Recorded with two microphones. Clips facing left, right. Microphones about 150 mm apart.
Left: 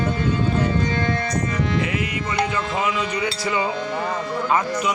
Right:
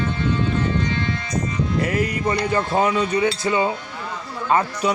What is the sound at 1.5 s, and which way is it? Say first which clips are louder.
Music: left 1 dB; 85° left.